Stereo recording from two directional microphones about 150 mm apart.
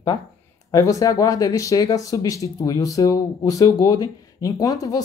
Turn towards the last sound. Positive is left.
turn(degrees=25)  # may be behind; listen again after turning